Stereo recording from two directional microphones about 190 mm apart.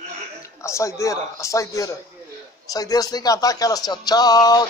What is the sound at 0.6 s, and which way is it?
Speech, 15° left (ahead or behind).